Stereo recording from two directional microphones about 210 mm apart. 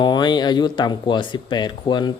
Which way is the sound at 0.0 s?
20° left (ahead or behind).